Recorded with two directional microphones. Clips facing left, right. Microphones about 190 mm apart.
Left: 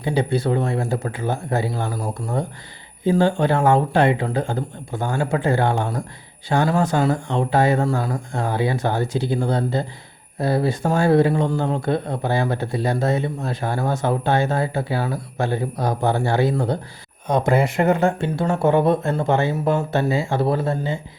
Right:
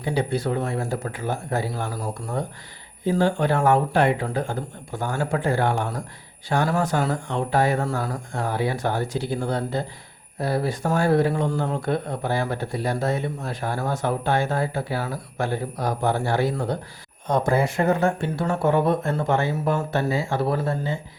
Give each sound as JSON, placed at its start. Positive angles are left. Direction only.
{"t": 0.0, "sound": "speech", "side_deg": 25}
{"t": 3.2, "sound": "speech", "side_deg": 25}